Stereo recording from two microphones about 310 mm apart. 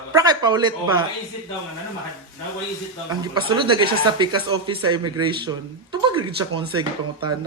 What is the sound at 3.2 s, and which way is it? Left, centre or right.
Speech, centre.